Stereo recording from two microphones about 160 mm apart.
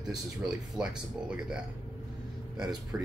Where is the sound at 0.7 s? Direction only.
5° right (ahead or behind).